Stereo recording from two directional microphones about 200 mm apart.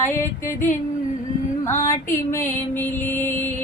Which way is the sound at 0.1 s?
10° left (ahead or behind).